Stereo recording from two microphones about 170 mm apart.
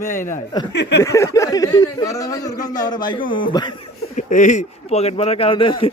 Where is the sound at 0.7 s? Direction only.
90° left.